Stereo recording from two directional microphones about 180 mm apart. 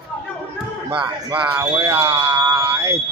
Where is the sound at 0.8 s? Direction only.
25° right (ahead or behind).